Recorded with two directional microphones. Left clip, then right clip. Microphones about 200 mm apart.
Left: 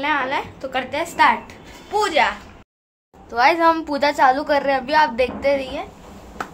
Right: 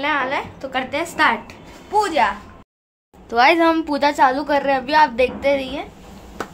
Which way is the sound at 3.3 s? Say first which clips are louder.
Right 2 dB; 40° right (ahead or behind).